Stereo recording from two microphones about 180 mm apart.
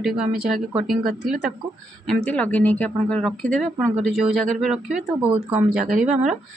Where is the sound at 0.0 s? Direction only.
Centre (ahead or behind).